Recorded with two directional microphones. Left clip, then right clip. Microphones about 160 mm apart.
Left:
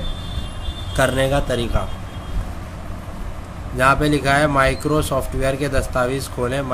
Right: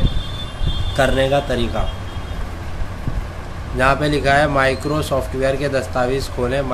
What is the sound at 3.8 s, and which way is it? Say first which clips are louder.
A man's voice: even; 30° left (ahead or behind).